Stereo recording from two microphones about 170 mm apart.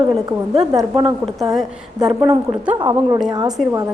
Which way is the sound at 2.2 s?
10° right (ahead or behind).